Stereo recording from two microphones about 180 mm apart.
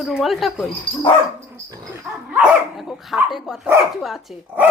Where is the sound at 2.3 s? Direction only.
5° right (ahead or behind).